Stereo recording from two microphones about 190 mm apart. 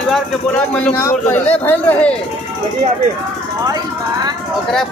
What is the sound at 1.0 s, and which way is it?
A man's voice, 15° left (ahead or behind).